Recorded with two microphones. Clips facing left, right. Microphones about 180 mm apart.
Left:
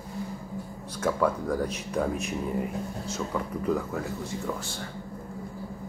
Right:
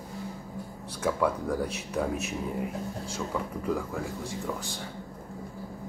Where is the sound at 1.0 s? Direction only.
10° right (ahead or behind).